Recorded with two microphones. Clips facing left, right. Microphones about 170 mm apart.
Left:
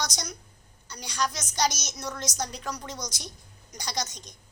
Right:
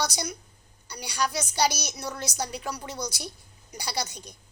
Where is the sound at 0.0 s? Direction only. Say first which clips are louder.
Right 4 dB; 10° right (ahead or behind).